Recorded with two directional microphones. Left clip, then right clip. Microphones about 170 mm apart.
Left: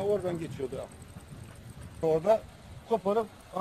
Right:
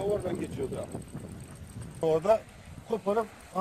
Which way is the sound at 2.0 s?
Centre (ahead or behind).